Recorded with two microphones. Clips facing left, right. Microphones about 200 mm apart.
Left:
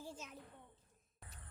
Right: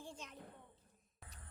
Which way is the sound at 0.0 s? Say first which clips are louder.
Left 1 dB; 5° left (ahead or behind).